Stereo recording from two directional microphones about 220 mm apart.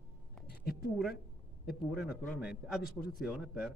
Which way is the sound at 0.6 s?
45° left (ahead or behind).